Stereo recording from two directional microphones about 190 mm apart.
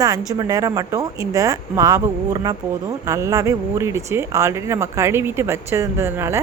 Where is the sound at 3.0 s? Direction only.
15° right (ahead or behind).